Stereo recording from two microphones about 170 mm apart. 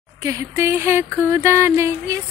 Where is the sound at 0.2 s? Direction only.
15° right (ahead or behind).